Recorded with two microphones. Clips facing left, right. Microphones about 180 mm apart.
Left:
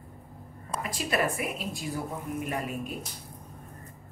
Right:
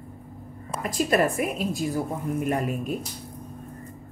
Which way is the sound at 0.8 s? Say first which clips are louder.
Right 7 dB; 45° right (ahead or behind).